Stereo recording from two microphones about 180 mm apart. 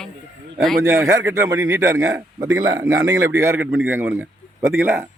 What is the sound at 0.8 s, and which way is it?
A man's voice, 15° right (ahead or behind).